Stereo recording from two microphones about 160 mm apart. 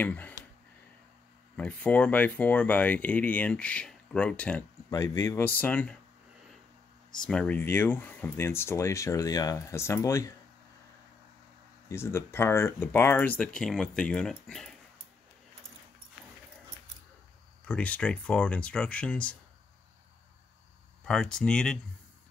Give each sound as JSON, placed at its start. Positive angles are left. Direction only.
{"t": 0.0, "sound": "speech", "side_deg": 10}
{"t": 1.6, "sound": "speech", "side_deg": 10}
{"t": 4.9, "sound": "speech", "side_deg": 20}
{"t": 5.6, "sound": "speech", "side_deg": 10}
{"t": 7.2, "sound": "speech", "side_deg": 5}
{"t": 11.9, "sound": "speech", "side_deg": 15}
{"t": 17.6, "sound": "speech", "side_deg": 10}
{"t": 21.0, "sound": "speech", "side_deg": 5}